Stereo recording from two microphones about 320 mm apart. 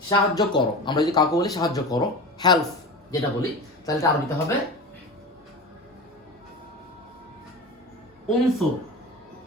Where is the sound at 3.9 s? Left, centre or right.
Centre.